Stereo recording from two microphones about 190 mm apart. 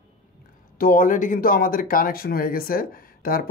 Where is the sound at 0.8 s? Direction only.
45° left (ahead or behind).